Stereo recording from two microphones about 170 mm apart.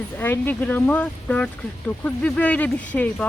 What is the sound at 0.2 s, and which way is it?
Speech, 10° left (ahead or behind).